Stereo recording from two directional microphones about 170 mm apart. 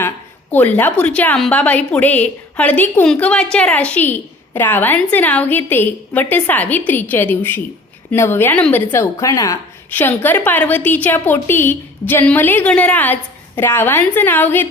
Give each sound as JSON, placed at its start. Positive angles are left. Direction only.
{"t": 0.5, "sound": "a woman's voice", "side_deg": 10}